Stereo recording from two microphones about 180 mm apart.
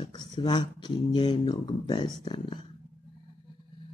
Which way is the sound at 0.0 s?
25° left (ahead or behind).